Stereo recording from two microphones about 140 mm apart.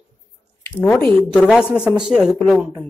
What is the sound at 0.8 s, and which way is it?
Speech, 15° left (ahead or behind).